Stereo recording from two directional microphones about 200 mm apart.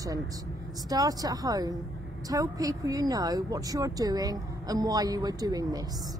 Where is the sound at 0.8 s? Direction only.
20° right (ahead or behind).